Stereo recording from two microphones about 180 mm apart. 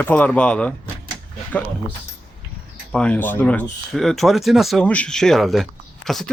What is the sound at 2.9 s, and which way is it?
Speech, 5° left (ahead or behind).